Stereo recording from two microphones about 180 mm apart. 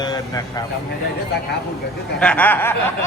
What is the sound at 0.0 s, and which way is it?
Speech, 20° left (ahead or behind).